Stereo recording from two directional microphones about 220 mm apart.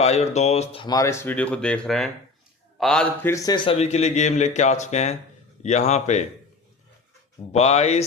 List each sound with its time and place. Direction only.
0.0 s a man's voice: 30° left (ahead or behind)
7.5 s speech: 30° left (ahead or behind)